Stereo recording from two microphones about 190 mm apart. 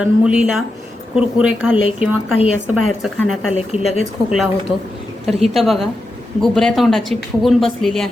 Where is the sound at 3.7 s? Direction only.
35° left (ahead or behind).